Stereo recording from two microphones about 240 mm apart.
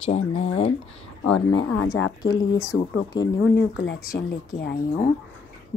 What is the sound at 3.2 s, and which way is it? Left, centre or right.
Speech, left.